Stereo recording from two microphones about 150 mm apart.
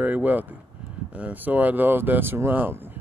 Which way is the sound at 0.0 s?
10° right (ahead or behind).